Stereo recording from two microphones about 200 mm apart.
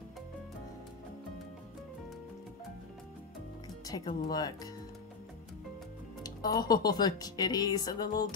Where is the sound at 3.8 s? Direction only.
20° left (ahead or behind).